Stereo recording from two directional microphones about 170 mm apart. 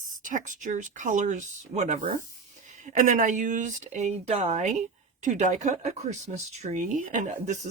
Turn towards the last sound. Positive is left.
turn(degrees=-50)  # may be behind; listen again after turning